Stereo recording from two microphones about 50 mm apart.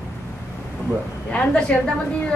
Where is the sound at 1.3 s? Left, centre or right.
Left.